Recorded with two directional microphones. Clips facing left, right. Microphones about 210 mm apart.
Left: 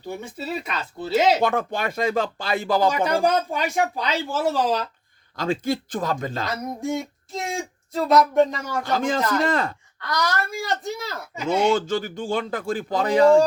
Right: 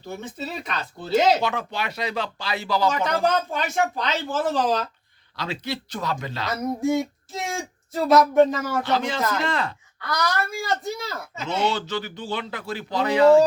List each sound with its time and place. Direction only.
0.0 s speech: 10° left (ahead or behind)
1.4 s speech: 50° left (ahead or behind)
2.9 s speech: 10° left (ahead or behind)
5.4 s speech: 50° left (ahead or behind)
6.5 s speech: centre (ahead or behind)
8.8 s speech: 45° left (ahead or behind)
10.1 s speech: centre (ahead or behind)
11.6 s speech: 50° left (ahead or behind)